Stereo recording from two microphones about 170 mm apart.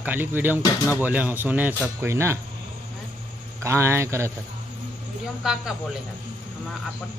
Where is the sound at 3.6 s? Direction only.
15° right (ahead or behind).